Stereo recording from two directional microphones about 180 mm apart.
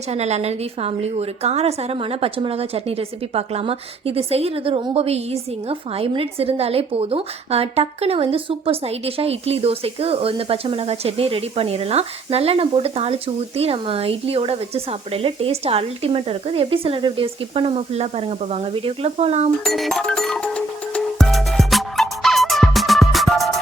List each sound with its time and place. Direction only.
0.1 s a woman's voice: 35° right (ahead or behind)
19.6 s music: centre (ahead or behind)